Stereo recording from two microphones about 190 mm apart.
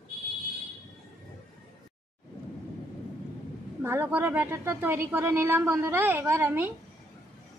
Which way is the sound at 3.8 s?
10° right (ahead or behind).